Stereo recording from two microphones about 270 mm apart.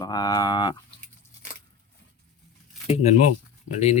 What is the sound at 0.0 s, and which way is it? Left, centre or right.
Speech, centre.